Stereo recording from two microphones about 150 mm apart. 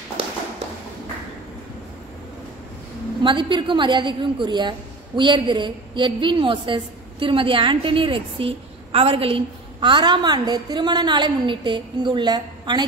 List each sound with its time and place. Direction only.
3.3 s a woman's voice: 30° right (ahead or behind)